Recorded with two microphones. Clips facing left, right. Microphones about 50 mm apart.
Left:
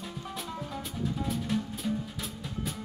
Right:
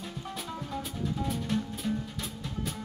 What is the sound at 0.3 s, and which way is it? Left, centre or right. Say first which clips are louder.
Music: right 1 dB; centre.